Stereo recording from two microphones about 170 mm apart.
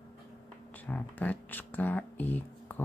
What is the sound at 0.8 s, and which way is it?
Speech, 10° left (ahead or behind).